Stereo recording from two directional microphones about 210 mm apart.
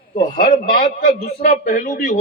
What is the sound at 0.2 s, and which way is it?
A man's voice, 40° left (ahead or behind).